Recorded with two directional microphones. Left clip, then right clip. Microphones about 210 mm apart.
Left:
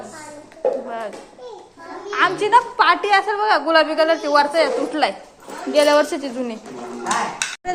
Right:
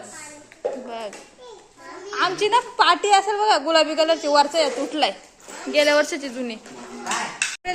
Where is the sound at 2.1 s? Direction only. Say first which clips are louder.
Left 4 dB; 30° right (ahead or behind).